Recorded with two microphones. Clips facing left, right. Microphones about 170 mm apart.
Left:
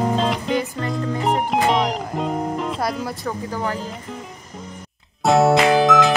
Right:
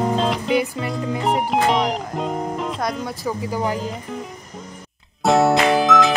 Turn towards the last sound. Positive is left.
turn(degrees=0)  # may be behind; listen again after turning